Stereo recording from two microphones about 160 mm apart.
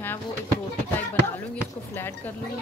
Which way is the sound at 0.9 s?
10° left (ahead or behind).